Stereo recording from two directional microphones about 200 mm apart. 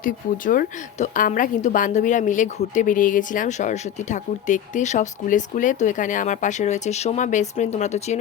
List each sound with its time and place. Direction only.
0.0 s a woman's voice: 45° left (ahead or behind)